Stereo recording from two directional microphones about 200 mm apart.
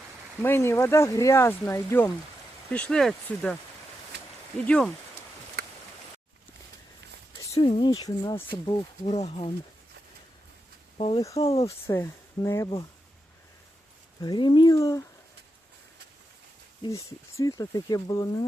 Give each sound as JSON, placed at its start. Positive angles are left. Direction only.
{"t": 0.4, "sound": "speech", "side_deg": 10}
{"t": 4.6, "sound": "speech", "side_deg": 5}
{"t": 7.5, "sound": "speech", "side_deg": 25}
{"t": 9.0, "sound": "speech", "side_deg": 35}
{"t": 10.9, "sound": "speech", "side_deg": 30}
{"t": 11.9, "sound": "speech", "side_deg": 15}
{"t": 14.2, "sound": "speech", "side_deg": 20}
{"t": 16.8, "sound": "speech", "side_deg": 15}